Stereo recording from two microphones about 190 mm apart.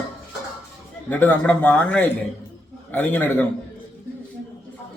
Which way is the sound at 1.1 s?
10° left (ahead or behind).